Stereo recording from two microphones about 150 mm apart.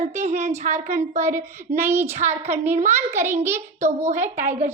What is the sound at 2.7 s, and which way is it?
Speech, 50° right (ahead or behind).